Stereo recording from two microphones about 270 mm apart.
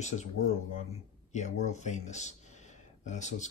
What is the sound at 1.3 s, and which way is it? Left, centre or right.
Speech, left.